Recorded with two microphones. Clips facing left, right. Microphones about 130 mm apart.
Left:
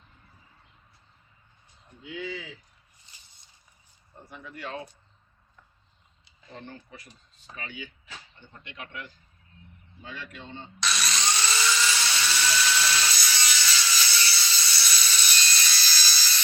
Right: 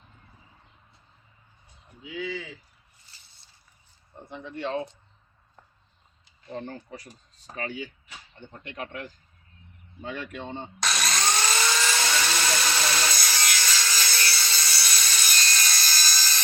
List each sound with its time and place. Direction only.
2.0 s speech: centre (ahead or behind)
3.1 s a sound: 15° left (ahead or behind)
4.2 s speech: 25° right (ahead or behind)
6.2 s speech: 40° right (ahead or behind)
8.4 s speech: 50° right (ahead or behind)
10.0 s drill: 55° right (ahead or behind)